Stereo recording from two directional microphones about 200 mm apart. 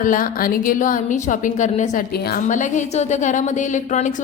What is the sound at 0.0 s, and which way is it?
A woman's voice, 40° left (ahead or behind).